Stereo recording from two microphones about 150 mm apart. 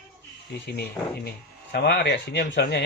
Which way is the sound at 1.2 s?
90° left.